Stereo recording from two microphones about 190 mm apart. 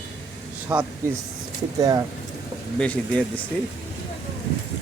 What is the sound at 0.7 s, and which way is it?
Speech, 5° right (ahead or behind).